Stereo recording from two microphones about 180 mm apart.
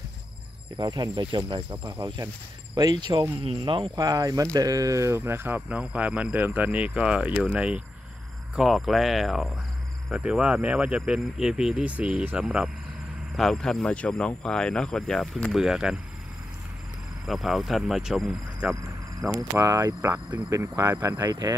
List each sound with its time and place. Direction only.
0.7 s speech: 25° right (ahead or behind); by 16.0 s 5° right (ahead or behind)
17.3 s speech: centre (ahead or behind)
18.7 s a sound: 20° right (ahead or behind)
19.3 s speech: 15° right (ahead or behind)